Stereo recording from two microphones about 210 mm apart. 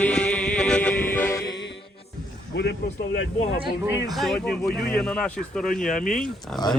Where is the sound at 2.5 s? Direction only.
55° left (ahead or behind).